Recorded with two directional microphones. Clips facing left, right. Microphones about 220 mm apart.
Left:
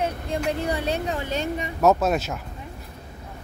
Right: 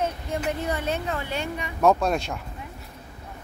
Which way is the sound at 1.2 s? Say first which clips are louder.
Left 3 dB; 45° left (ahead or behind).